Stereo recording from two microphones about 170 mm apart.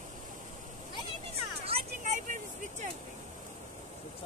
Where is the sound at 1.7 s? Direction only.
45° right (ahead or behind).